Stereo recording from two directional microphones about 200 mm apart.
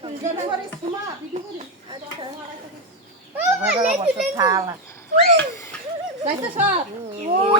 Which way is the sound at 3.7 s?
35° right (ahead or behind).